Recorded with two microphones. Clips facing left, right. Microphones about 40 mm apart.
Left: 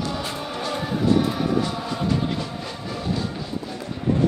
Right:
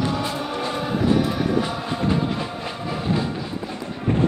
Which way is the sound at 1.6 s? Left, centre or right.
Right.